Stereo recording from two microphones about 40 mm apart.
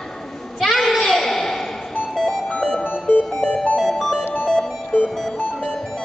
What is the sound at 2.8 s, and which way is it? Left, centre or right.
Music, left.